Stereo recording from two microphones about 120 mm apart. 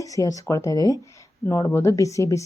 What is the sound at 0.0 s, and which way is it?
A woman's voice, 30° left (ahead or behind).